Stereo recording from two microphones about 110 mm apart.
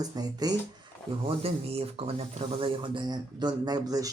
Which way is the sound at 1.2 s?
65° right (ahead or behind).